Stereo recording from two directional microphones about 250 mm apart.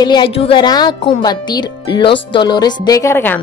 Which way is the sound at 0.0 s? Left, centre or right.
Centre.